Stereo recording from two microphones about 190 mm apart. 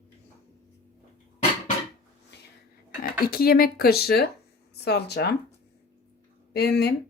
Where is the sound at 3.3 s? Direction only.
50° left (ahead or behind).